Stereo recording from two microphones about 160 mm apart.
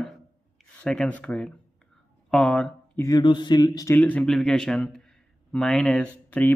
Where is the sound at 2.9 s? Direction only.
25° left (ahead or behind).